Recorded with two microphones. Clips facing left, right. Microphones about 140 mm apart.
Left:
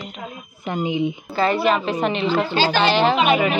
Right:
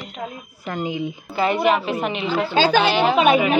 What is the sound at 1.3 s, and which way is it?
A woman's voice, 15° right (ahead or behind).